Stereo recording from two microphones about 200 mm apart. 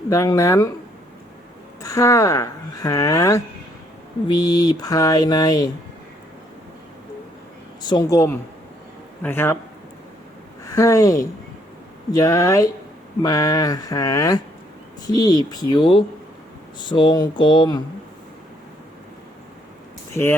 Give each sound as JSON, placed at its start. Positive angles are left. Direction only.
{"t": 0.1, "sound": "speech", "side_deg": 15}
{"t": 1.8, "sound": "speech", "side_deg": 15}
{"t": 7.8, "sound": "speech", "side_deg": 20}
{"t": 10.7, "sound": "speech", "side_deg": 15}
{"t": 20.1, "sound": "speech", "side_deg": 10}